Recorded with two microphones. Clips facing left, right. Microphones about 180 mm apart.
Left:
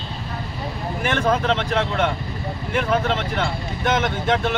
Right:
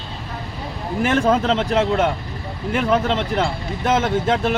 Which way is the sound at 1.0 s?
35° right (ahead or behind).